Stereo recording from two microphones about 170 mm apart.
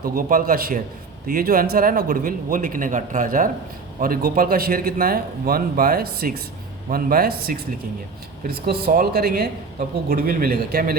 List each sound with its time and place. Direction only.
0.0 s a man's voice: 55° right (ahead or behind)